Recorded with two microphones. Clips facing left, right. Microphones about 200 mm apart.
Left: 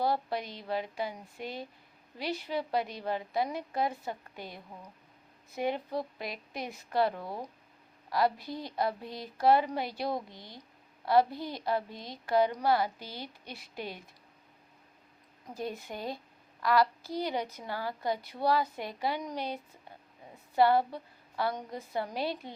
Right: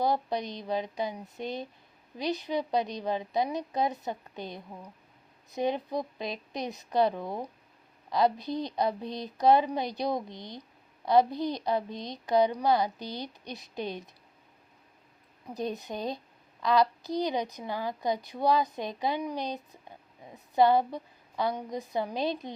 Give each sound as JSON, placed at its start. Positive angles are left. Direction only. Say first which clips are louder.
{"t": 0.0, "sound": "a woman's voice", "louder": "right 2 dB", "side_deg": -15}
{"t": 15.5, "sound": "a woman's voice", "louder": "right 4 dB", "side_deg": -20}